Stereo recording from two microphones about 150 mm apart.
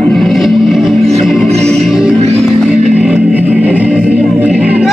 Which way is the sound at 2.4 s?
Centre (ahead or behind).